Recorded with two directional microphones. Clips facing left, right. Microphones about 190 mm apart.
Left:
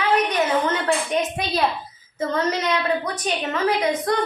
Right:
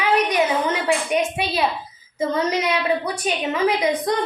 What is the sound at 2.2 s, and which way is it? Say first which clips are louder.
A woman's voice: right 2 dB; 10° right (ahead or behind).